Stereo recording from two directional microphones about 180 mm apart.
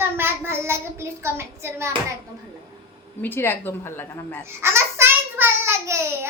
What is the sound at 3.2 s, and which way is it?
A woman's voice, 10° left (ahead or behind).